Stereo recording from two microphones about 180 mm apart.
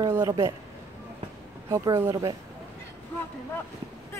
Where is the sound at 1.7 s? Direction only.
20° right (ahead or behind).